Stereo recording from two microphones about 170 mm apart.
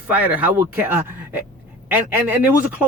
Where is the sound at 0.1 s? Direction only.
10° right (ahead or behind).